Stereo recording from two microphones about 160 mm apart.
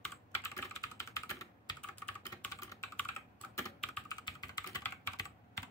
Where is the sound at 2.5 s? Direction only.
20° left (ahead or behind).